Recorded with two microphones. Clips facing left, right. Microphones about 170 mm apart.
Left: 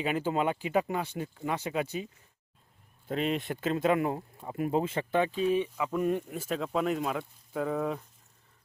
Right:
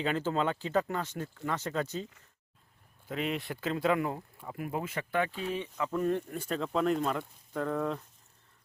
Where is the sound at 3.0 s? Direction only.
30° left (ahead or behind).